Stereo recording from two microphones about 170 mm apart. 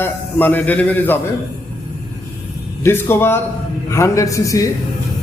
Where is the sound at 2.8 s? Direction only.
15° left (ahead or behind).